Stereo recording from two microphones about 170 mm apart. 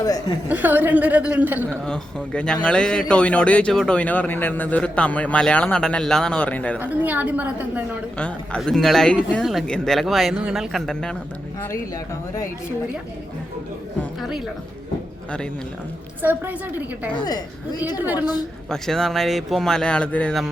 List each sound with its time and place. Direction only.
0.0 s a woman's voice: 20° left (ahead or behind)
0.4 s a woman's voice: 10° right (ahead or behind)
1.8 s a man's voice: 5° left (ahead or behind)
6.7 s a woman's voice: 10° right (ahead or behind)
8.2 s speech: 5° left (ahead or behind)
14.2 s a woman's voice: centre (ahead or behind)
16.2 s a woman's voice: 10° right (ahead or behind)
17.2 s a woman's voice: 25° left (ahead or behind)
18.0 s a woman's voice: 10° right (ahead or behind)
18.7 s speech: 5° left (ahead or behind)